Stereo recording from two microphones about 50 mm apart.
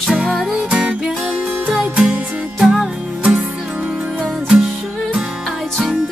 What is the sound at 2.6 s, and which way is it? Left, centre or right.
Music, centre.